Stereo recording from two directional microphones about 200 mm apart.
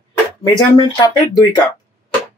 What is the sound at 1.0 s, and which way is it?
Speech, 20° left (ahead or behind).